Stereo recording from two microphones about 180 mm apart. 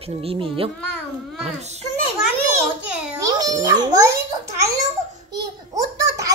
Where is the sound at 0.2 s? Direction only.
30° right (ahead or behind).